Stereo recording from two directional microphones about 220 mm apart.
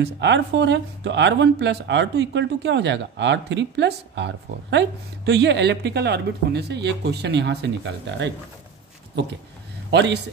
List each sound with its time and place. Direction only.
0.0 s speech: 55° right (ahead or behind)
9.8 s a man's voice: 50° right (ahead or behind)